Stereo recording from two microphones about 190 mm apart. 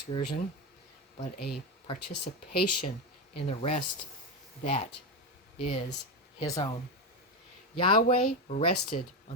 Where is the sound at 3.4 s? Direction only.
35° left (ahead or behind).